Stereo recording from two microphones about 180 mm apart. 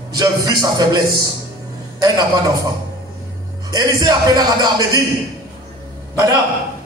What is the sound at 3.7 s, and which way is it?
A man's voice, 20° right (ahead or behind).